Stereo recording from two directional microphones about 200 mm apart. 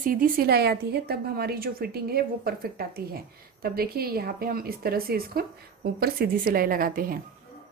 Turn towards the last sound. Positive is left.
turn(degrees=-45)  # may be behind; listen again after turning